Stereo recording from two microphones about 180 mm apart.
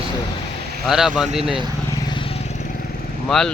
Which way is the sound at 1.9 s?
20° left (ahead or behind).